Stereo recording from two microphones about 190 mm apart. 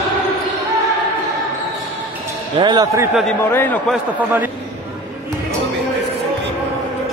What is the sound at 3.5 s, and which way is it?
Speech, 10° left (ahead or behind).